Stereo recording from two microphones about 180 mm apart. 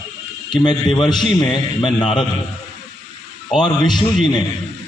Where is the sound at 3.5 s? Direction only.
25° left (ahead or behind).